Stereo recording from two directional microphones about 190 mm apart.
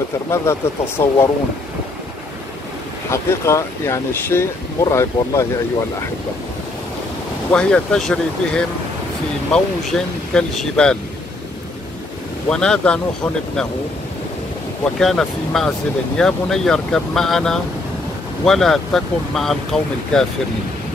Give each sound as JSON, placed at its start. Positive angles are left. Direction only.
{"t": 0.3, "sound": "speech", "side_deg": 15}
{"t": 3.1, "sound": "speech", "side_deg": 15}
{"t": 7.5, "sound": "speech", "side_deg": 5}
{"t": 12.4, "sound": "speech", "side_deg": 5}
{"t": 15.0, "sound": "speech", "side_deg": 0}